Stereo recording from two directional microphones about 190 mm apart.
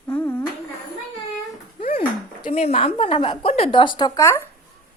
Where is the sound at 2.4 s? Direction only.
35° left (ahead or behind); by 4.5 s 15° left (ahead or behind).